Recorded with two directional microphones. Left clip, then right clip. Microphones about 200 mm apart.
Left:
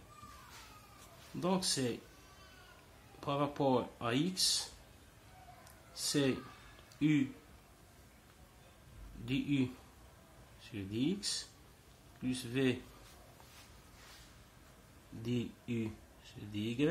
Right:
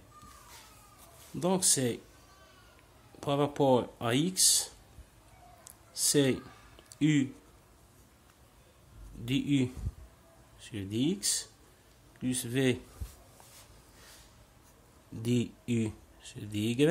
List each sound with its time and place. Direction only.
1.4 s speech: 40° right (ahead or behind)
3.2 s speech: 40° right (ahead or behind)
5.9 s speech: 40° right (ahead or behind)
9.2 s speech: 40° right (ahead or behind)
15.2 s speech: 50° right (ahead or behind)